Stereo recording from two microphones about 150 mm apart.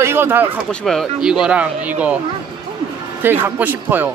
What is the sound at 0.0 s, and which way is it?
Speech, 15° right (ahead or behind).